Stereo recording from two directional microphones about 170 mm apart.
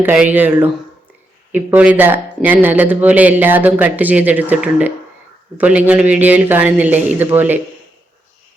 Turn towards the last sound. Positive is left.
turn(degrees=-10)  # may be behind; listen again after turning